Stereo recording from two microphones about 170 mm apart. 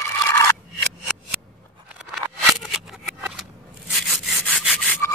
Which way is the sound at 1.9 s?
Centre (ahead or behind).